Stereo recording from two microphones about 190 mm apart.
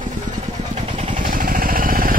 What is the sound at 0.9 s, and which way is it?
Vehicle, 40° right (ahead or behind).